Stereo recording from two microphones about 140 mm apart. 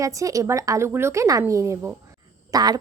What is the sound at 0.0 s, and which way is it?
Speech, 25° right (ahead or behind).